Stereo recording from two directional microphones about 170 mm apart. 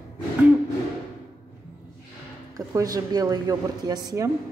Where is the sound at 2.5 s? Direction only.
20° right (ahead or behind).